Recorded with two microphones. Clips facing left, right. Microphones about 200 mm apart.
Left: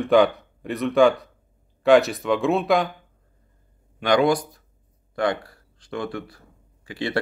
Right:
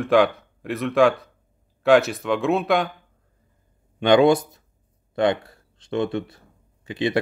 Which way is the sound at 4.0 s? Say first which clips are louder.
Right 4 dB; 25° right (ahead or behind).